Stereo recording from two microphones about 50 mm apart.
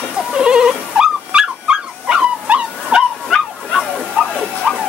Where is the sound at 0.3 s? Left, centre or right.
Centre.